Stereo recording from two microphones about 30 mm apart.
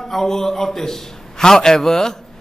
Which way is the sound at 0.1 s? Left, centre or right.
Centre.